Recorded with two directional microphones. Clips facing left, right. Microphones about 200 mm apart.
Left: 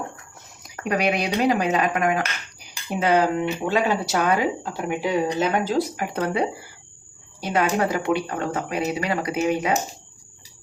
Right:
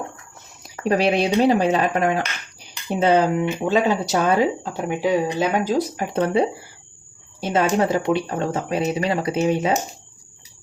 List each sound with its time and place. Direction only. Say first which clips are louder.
0.9 s speech: right 4 dB; 30° right (ahead or behind)
4.9 s speech: right 2 dB; 15° right (ahead or behind)
6.0 s speech: right 4 dB; 25° right (ahead or behind)
7.4 s speech: right 3 dB; 25° right (ahead or behind)